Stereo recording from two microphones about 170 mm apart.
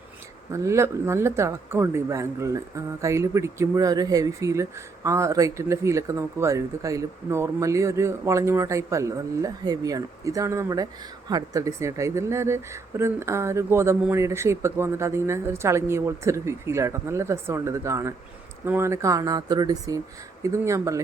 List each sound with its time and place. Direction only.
0.5 s speech: 15° right (ahead or behind)